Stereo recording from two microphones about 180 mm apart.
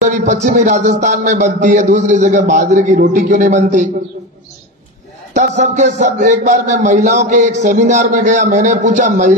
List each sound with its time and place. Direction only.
0.0 s a man's voice: 40° right (ahead or behind)
5.3 s a man's voice: 40° right (ahead or behind)